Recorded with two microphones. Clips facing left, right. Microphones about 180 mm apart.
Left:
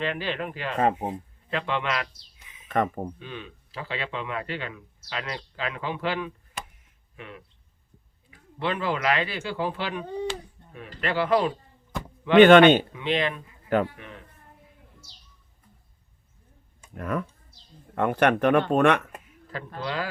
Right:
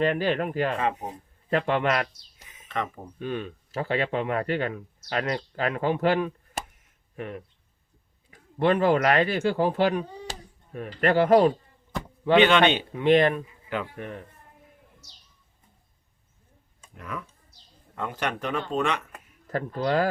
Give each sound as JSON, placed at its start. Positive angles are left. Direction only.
{"t": 0.0, "sound": "speech", "side_deg": -45}
{"t": 2.6, "sound": "speech", "side_deg": 50}
{"t": 3.2, "sound": "speech", "side_deg": -50}
{"t": 10.6, "sound": "a sound", "side_deg": 65}
{"t": 11.0, "sound": "speech", "side_deg": -45}
{"t": 12.4, "sound": "a man's voice", "side_deg": 50}
{"t": 12.9, "sound": "speech", "side_deg": -50}
{"t": 16.9, "sound": "a man's voice", "side_deg": 50}
{"t": 19.5, "sound": "speech", "side_deg": -45}